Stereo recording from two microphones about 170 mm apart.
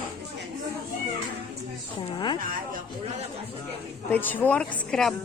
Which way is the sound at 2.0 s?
25° left (ahead or behind).